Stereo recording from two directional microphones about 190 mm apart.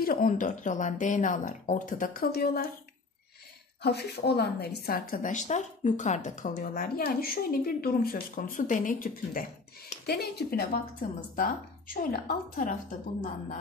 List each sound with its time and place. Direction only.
0.0 s a woman's voice: 45° left (ahead or behind)
3.8 s a woman's voice: 60° left (ahead or behind)
10.0 s a woman's voice: 60° left (ahead or behind)